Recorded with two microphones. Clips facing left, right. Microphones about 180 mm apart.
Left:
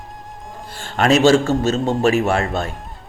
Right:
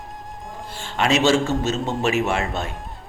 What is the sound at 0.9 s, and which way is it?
A man's voice, 45° left (ahead or behind).